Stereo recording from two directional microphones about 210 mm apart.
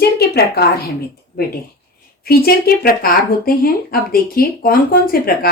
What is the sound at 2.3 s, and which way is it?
Speech, 45° left (ahead or behind).